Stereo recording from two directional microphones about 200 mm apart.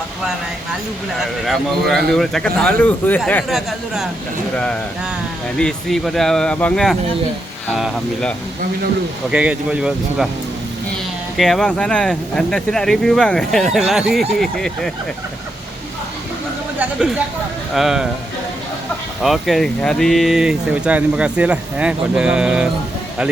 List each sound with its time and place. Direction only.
1.2 s speech: centre (ahead or behind)
11.3 s speech: centre (ahead or behind)
16.8 s speech: 5° right (ahead or behind)
19.2 s speech: centre (ahead or behind)